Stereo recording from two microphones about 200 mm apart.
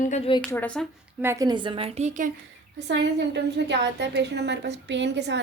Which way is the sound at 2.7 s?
60° right (ahead or behind).